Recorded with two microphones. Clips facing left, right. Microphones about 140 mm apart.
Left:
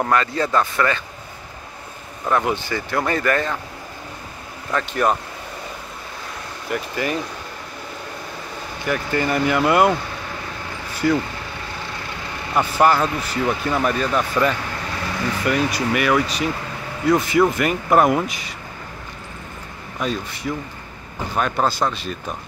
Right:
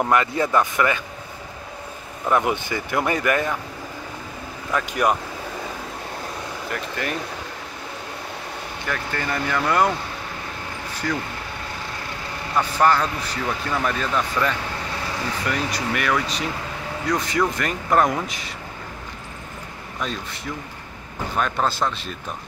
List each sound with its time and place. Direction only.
0.0 s speech: 15° right (ahead or behind)
2.2 s speech: 15° right (ahead or behind)
4.7 s speech: 10° right (ahead or behind)
6.7 s speech: 5° left (ahead or behind)
8.8 s speech: 10° left (ahead or behind)
11.0 s speech: 10° left (ahead or behind)
12.5 s speech: 10° left (ahead or behind)
20.0 s speech: 5° left (ahead or behind)